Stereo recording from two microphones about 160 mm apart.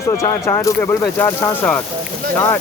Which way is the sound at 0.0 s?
20° left (ahead or behind).